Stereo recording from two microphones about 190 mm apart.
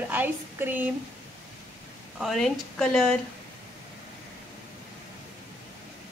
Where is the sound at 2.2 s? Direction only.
Centre (ahead or behind).